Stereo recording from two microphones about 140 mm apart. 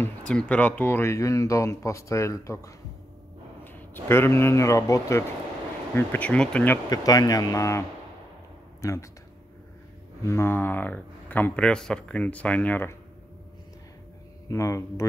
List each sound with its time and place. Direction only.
0.3 s speech: 10° left (ahead or behind); by 5.2 s 25° left (ahead or behind)
5.9 s speech: 10° left (ahead or behind)
6.9 s speech: 25° left (ahead or behind)
8.8 s speech: 20° left (ahead or behind)
10.2 s speech: 15° left (ahead or behind)
14.5 s speech: 20° left (ahead or behind)